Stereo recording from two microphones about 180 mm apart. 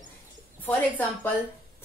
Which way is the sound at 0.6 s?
10° left (ahead or behind).